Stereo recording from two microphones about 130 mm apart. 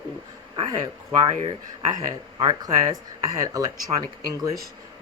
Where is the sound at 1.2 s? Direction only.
30° right (ahead or behind).